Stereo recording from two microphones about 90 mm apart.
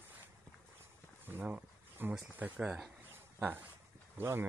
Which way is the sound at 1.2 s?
20° right (ahead or behind).